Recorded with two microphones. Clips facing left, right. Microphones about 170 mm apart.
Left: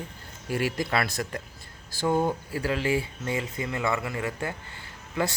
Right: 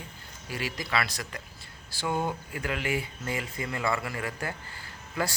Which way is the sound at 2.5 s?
30° left (ahead or behind).